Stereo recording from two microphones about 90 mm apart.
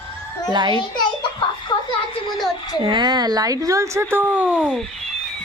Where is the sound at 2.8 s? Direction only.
60° right (ahead or behind); by 4.0 s 40° right (ahead or behind).